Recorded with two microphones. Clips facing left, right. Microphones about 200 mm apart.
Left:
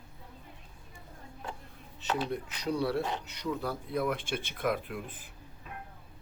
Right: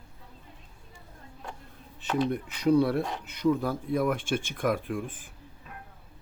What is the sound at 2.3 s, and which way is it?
Speech, 55° right (ahead or behind).